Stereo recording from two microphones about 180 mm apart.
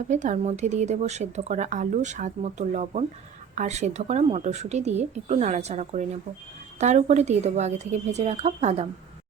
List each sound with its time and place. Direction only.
0.1 s speech: 40° right (ahead or behind)